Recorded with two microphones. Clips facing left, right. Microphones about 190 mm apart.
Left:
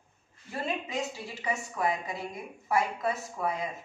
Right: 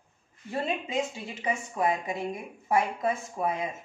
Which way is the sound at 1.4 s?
20° right (ahead or behind).